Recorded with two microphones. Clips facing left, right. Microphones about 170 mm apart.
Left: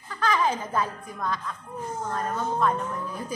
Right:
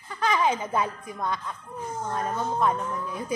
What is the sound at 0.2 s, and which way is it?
A woman's voice, 20° right (ahead or behind).